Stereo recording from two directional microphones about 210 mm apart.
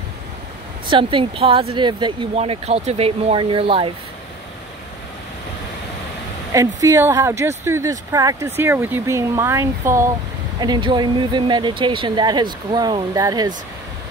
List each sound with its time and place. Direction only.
0.8 s speech: 25° right (ahead or behind)
6.5 s speech: 15° right (ahead or behind)